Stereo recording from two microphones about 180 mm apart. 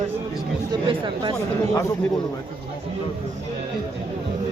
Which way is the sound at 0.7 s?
25° right (ahead or behind).